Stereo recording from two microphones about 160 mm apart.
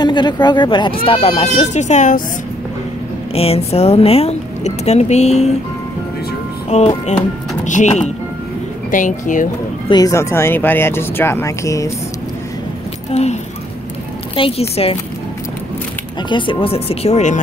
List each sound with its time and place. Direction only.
0.0 s speech: 25° left (ahead or behind); by 2.2 s 50° left (ahead or behind)
3.3 s speech: 40° left (ahead or behind)
6.7 s speech: 40° left (ahead or behind)
9.8 s speech: 25° left (ahead or behind)
13.1 s speech: 45° left (ahead or behind)
16.2 s speech: 30° left (ahead or behind); by 17.4 s 45° left (ahead or behind)